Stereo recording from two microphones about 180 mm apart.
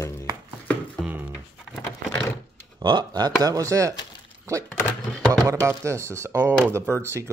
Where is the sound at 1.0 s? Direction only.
Centre (ahead or behind).